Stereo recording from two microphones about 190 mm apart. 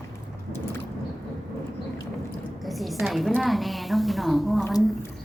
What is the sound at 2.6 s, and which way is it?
A woman's voice, centre (ahead or behind).